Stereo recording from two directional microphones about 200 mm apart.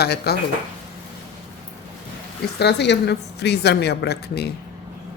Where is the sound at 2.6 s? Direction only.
55° left (ahead or behind).